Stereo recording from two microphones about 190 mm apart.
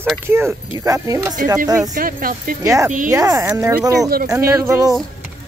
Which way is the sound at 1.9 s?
50° right (ahead or behind).